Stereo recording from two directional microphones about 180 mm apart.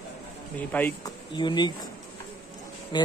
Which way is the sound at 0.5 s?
10° left (ahead or behind).